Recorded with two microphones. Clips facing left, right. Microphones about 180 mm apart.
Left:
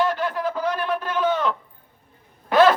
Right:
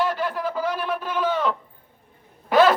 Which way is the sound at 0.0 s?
5° right (ahead or behind).